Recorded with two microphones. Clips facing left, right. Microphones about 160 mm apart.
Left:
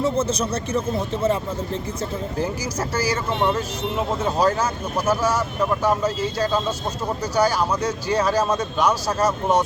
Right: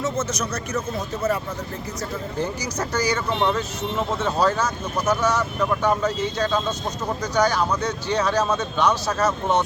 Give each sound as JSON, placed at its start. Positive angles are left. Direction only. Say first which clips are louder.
{"t": 0.0, "sound": "speech", "louder": "left 4 dB", "side_deg": 30}
{"t": 2.4, "sound": "speech", "louder": "even", "side_deg": 5}
{"t": 7.3, "sound": "speech", "louder": "left 1 dB", "side_deg": 10}